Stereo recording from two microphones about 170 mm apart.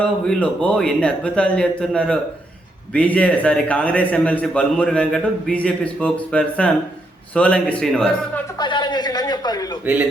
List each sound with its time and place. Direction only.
0.0 s a man's voice: 5° left (ahead or behind)
8.5 s speech: 25° left (ahead or behind)